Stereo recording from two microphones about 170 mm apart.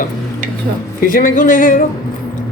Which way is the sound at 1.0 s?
55° left (ahead or behind).